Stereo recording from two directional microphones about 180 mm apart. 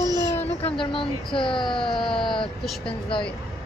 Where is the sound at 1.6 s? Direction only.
Centre (ahead or behind).